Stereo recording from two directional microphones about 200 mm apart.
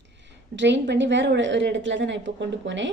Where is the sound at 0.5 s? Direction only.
65° right (ahead or behind).